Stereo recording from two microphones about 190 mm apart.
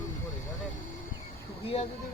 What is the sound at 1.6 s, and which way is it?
Speech, 35° left (ahead or behind).